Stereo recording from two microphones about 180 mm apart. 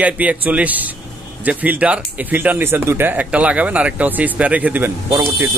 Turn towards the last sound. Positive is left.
turn(degrees=-15)  # may be behind; listen again after turning